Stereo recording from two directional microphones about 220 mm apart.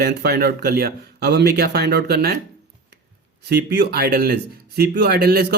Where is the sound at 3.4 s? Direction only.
50° right (ahead or behind).